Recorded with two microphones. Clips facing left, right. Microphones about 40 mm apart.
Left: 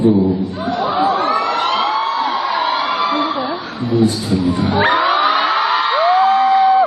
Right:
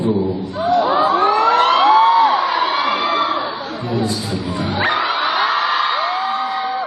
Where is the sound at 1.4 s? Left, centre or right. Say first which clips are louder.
Right 4 dB; right.